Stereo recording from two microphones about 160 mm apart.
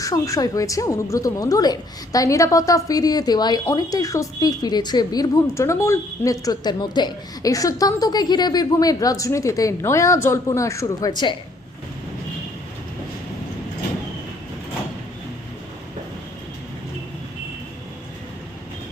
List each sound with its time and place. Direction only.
0.0 s a woman's voice: 20° left (ahead or behind)